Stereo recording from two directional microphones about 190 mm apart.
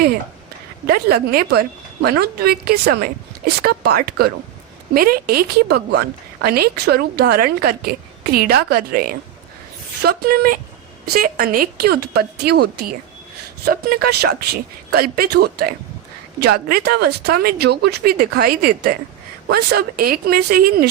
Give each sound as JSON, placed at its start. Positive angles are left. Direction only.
{"t": 0.9, "sound": "a woman's voice", "side_deg": -55}